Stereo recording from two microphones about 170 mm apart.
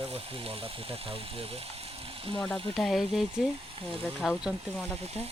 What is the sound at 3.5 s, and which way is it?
Speech, 30° right (ahead or behind).